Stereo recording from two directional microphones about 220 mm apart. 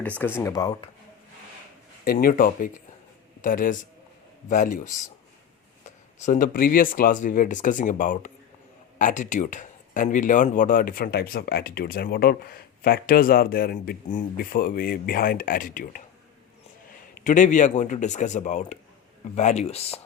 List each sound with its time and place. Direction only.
0.0 s speech: 5° left (ahead or behind)
2.0 s speech: 40° left (ahead or behind)
6.2 s speech: 35° left (ahead or behind)
17.2 s speech: 35° left (ahead or behind)